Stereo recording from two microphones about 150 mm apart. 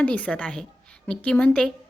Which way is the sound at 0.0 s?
10° left (ahead or behind).